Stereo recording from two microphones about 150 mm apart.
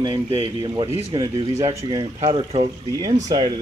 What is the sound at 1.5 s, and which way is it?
Speech, 40° right (ahead or behind).